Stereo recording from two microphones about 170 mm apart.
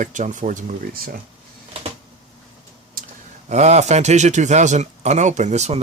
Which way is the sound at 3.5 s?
40° right (ahead or behind).